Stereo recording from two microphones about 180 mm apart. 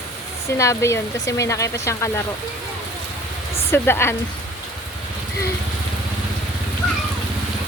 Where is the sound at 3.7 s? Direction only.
10° left (ahead or behind).